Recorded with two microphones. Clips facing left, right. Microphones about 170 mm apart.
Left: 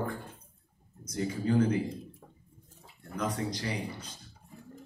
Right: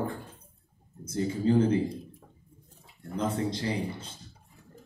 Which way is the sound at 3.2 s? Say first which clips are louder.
Right 3 dB; 25° right (ahead or behind).